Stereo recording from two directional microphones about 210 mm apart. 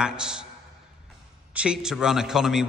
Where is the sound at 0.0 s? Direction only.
5° right (ahead or behind).